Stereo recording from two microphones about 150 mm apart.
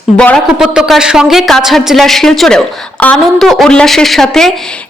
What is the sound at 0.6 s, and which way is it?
A woman's voice, 5° right (ahead or behind).